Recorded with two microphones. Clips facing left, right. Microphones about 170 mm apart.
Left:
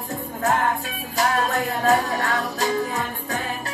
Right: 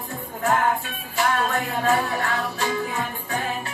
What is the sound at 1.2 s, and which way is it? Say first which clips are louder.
Music: left 1 dB; 40° left (ahead or behind).